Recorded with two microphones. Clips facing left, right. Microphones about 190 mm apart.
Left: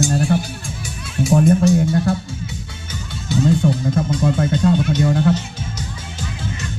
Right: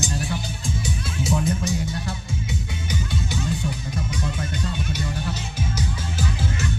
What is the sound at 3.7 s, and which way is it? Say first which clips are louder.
Speech: left 11 dB; 80° left.